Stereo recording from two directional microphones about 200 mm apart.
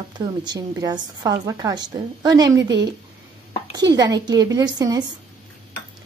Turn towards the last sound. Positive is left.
turn(degrees=-20)  # may be behind; listen again after turning